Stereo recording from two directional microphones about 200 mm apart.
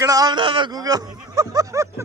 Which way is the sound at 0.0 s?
20° right (ahead or behind).